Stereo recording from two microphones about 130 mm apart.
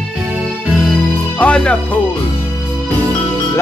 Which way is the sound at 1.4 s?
10° left (ahead or behind).